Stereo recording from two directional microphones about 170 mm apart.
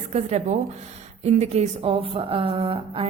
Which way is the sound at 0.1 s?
40° right (ahead or behind).